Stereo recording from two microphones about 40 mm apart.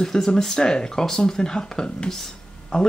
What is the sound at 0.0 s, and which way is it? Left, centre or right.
Speech, centre.